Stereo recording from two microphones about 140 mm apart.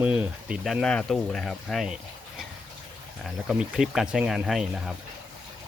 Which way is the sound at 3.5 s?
5° right (ahead or behind).